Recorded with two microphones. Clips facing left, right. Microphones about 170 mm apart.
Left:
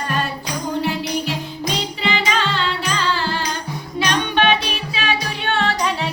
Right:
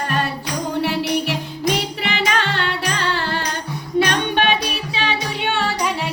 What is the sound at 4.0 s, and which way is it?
Music, 50° right (ahead or behind).